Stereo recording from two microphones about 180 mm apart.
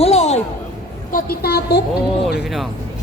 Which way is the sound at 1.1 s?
55° left (ahead or behind).